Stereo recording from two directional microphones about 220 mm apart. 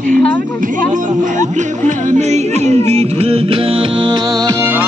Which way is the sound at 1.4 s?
35° right (ahead or behind).